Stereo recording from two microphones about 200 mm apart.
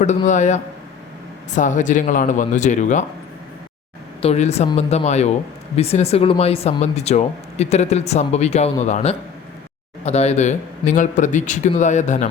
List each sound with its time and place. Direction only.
0.3 s speech: 35° left (ahead or behind)
4.2 s speech: 30° left (ahead or behind)